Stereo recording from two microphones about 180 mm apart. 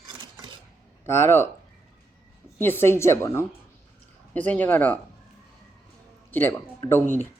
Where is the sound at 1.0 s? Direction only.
15° left (ahead or behind).